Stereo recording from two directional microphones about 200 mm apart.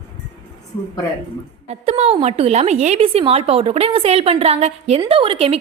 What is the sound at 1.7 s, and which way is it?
A woman's voice, 30° right (ahead or behind).